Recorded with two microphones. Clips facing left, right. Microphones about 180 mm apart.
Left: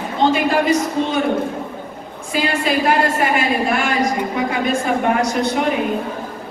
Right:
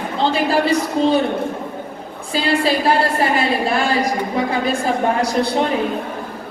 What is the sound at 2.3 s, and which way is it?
A woman's voice, 30° right (ahead or behind).